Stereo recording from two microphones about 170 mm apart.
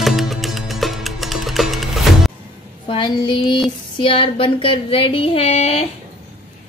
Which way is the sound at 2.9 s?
25° left (ahead or behind).